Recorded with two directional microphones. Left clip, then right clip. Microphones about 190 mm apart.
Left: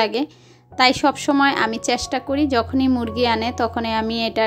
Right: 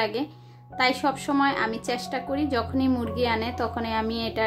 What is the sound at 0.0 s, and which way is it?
Speech, 40° left (ahead or behind).